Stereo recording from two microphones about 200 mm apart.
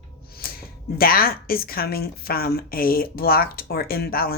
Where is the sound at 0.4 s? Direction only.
50° left (ahead or behind).